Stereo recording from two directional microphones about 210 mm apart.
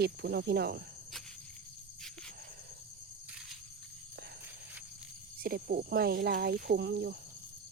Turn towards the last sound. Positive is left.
turn(degrees=-50)  # may be behind; listen again after turning